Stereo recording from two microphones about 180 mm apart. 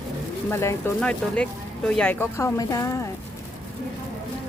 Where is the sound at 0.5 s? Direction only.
15° left (ahead or behind).